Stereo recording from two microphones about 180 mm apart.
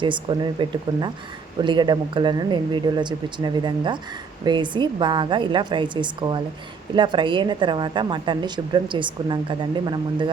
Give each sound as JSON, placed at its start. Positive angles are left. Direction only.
{"t": 0.0, "sound": "a woman's voice", "side_deg": -25}